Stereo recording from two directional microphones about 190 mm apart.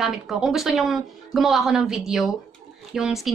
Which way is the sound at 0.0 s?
Centre (ahead or behind).